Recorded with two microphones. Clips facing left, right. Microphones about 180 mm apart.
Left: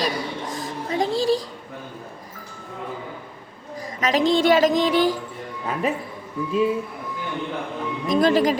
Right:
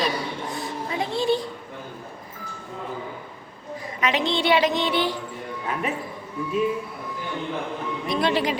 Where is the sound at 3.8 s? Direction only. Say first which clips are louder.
Left 4 dB; 40° left (ahead or behind).